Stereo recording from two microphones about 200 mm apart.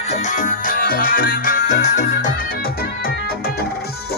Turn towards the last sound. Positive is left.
turn(degrees=50)  # may be behind; listen again after turning